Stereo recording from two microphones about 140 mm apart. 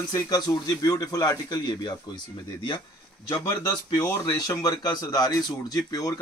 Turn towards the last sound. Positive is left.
turn(degrees=25)  # may be behind; listen again after turning